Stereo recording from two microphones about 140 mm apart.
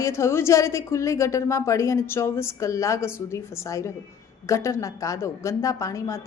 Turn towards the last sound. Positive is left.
turn(degrees=20)  # may be behind; listen again after turning